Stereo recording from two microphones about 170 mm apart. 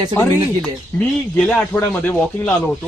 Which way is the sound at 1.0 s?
5° left (ahead or behind).